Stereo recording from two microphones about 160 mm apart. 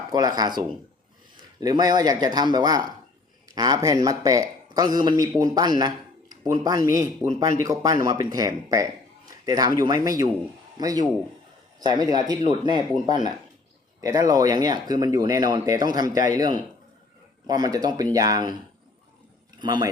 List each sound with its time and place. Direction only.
0.1 s a man's voice: 25° right (ahead or behind)
19.5 s speech: 25° right (ahead or behind)